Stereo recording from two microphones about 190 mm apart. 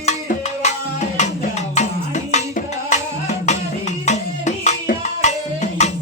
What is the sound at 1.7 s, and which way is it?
Music, 40° left (ahead or behind).